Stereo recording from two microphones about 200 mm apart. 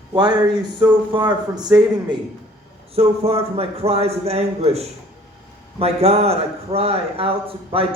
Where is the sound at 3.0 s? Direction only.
30° right (ahead or behind).